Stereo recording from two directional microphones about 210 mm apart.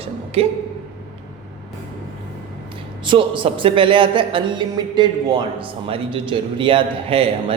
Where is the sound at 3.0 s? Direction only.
25° right (ahead or behind).